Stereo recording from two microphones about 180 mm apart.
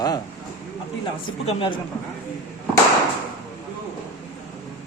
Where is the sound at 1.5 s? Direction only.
30° left (ahead or behind).